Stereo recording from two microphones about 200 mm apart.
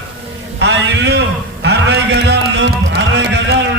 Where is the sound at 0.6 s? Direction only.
60° right (ahead or behind).